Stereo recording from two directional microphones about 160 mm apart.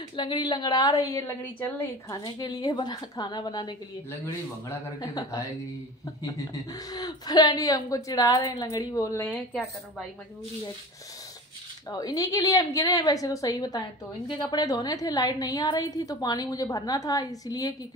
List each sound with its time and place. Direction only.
0.1 s a woman's voice: 30° left (ahead or behind); by 1.9 s 10° left (ahead or behind)
2.0 s a woman's voice: 25° left (ahead or behind)
9.2 s a woman's voice: 5° left (ahead or behind)
11.9 s a woman's voice: 25° left (ahead or behind)